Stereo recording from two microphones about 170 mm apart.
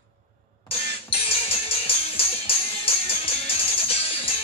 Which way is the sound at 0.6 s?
35° left (ahead or behind).